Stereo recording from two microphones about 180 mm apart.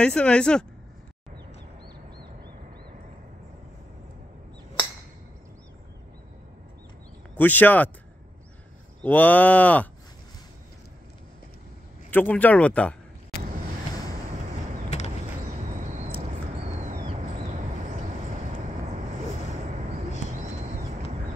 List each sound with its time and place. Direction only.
0.0 s speech: 5° left (ahead or behind)
7.3 s cattle: 10° left (ahead or behind)
9.0 s cattle: 10° left (ahead or behind)
12.1 s cattle: 10° left (ahead or behind)
18.0 s vehicle: 45° right (ahead or behind)
20.2 s a sound: 40° right (ahead or behind)